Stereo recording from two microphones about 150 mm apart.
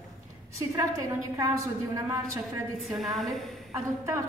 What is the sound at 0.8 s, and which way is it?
Speech, 20° right (ahead or behind).